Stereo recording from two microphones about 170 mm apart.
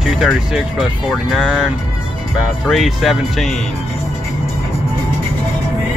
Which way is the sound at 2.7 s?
Centre (ahead or behind).